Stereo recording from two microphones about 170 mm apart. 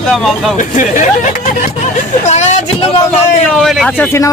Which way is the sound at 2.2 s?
45° left (ahead or behind).